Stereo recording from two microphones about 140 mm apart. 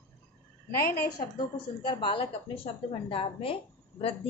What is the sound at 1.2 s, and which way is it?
A woman's voice, 35° left (ahead or behind).